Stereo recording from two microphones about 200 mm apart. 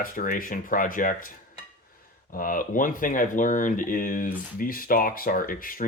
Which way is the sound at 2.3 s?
45° left (ahead or behind).